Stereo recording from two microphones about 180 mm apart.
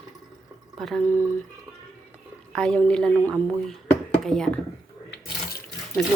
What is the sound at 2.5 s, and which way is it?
Speech, 5° left (ahead or behind).